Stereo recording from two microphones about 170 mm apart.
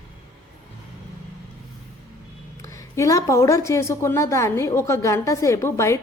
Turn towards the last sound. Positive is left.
turn(degrees=15)  # may be behind; listen again after turning